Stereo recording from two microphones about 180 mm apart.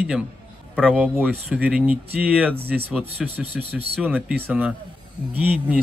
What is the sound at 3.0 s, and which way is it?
Speech, 35° right (ahead or behind).